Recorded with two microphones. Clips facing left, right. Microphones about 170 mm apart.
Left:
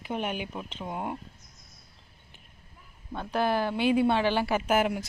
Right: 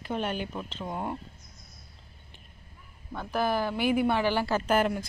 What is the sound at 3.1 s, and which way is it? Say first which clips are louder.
Speech: left 1 dB; 20° left (ahead or behind).